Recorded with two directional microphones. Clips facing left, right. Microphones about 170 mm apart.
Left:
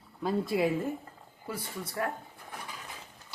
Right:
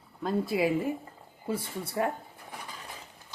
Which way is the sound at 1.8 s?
30° right (ahead or behind).